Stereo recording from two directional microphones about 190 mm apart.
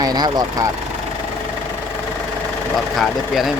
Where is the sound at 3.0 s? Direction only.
Centre (ahead or behind).